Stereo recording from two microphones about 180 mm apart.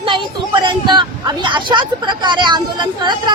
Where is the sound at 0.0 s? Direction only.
25° right (ahead or behind).